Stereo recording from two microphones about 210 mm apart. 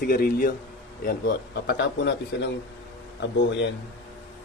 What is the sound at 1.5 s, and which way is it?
A man's voice, 50° left (ahead or behind).